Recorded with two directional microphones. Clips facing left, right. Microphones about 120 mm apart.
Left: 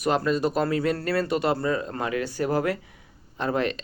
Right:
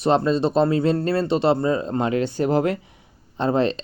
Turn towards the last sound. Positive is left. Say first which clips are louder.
# right 5 dB
turn(degrees=-30)  # may be behind; listen again after turning